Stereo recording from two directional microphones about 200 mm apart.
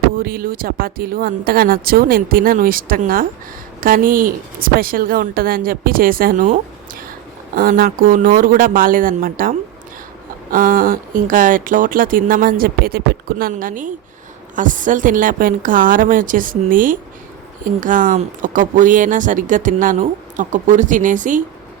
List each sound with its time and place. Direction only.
0.2 s speech: 45° right (ahead or behind)